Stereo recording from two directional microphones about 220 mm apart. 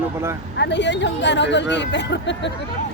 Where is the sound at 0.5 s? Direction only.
50° left (ahead or behind).